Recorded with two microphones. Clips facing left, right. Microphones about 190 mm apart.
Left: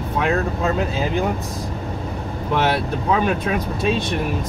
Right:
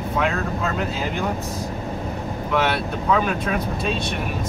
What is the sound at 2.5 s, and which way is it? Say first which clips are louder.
Speech: left 2 dB; 30° left (ahead or behind).